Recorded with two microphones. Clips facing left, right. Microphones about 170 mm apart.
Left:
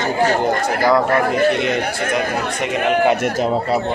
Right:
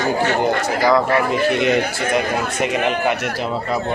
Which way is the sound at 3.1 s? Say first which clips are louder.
Left 4 dB; 35° left (ahead or behind).